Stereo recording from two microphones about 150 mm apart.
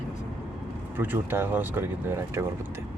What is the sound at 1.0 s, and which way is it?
Speech, 15° right (ahead or behind).